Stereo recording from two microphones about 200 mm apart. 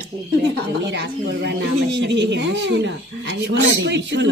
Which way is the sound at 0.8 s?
60° right (ahead or behind).